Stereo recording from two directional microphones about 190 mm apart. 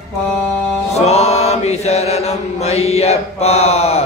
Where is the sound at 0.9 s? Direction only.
35° left (ahead or behind).